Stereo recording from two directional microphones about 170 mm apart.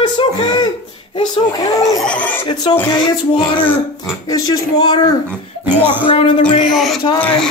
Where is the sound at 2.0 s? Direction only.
10° left (ahead or behind).